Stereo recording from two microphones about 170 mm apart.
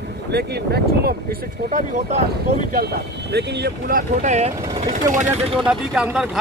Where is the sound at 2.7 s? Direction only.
70° right (ahead or behind); by 4.8 s 40° right (ahead or behind).